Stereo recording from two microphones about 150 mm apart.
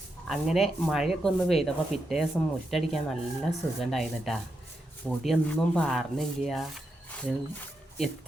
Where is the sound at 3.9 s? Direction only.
Centre (ahead or behind).